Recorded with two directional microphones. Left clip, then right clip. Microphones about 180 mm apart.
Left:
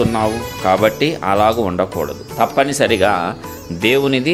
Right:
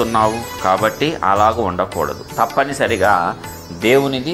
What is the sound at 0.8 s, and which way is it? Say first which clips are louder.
Speech: even; 30° left (ahead or behind).